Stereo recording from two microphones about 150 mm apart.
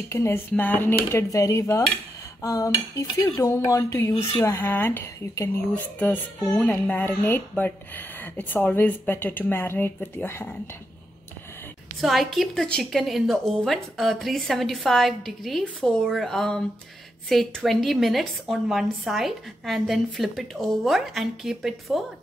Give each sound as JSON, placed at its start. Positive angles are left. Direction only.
{"t": 0.1, "sound": "speech", "side_deg": 20}
{"t": 1.1, "sound": "cutlery", "side_deg": 20}
{"t": 4.4, "sound": "speech", "side_deg": 15}
{"t": 12.0, "sound": "a woman's voice", "side_deg": 0}